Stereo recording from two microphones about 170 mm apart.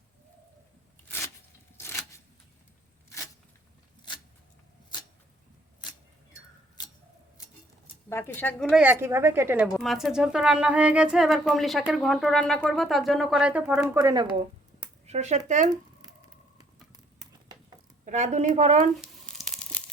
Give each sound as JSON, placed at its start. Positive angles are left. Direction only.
{"t": 1.0, "sound": "a sound", "side_deg": 15}
{"t": 8.1, "sound": "a woman's voice", "side_deg": 15}
{"t": 8.7, "sound": "a woman's voice", "side_deg": -10}
{"t": 9.7, "sound": "speech", "side_deg": 0}
{"t": 14.0, "sound": "speech", "side_deg": -25}
{"t": 15.0, "sound": "a woman's voice", "side_deg": -40}
{"t": 15.7, "sound": "a sound", "side_deg": -25}
{"t": 18.0, "sound": "a woman's voice", "side_deg": -45}
{"t": 19.0, "sound": "tearing", "side_deg": 0}